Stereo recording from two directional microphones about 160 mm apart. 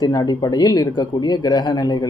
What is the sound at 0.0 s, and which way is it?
Speech, 25° left (ahead or behind).